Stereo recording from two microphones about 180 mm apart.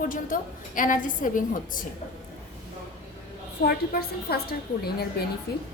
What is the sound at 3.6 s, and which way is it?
A woman's voice, 60° left (ahead or behind).